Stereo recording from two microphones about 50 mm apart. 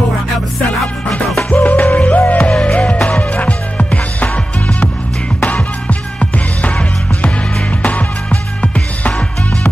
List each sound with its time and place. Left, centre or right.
1.6 s music: left
5.4 s music: left